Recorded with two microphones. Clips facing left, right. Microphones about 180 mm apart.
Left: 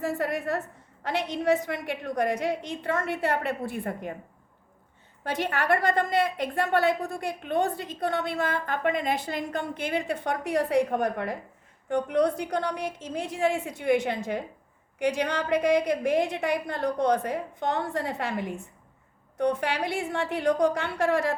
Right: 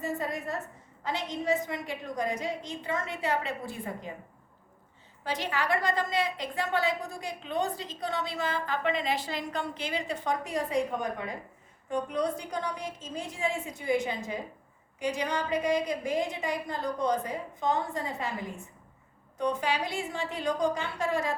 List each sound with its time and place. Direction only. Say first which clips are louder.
0.0 s a woman's voice: left 5 dB; 65° left (ahead or behind)
5.2 s a woman's voice: left 3 dB; 55° left (ahead or behind)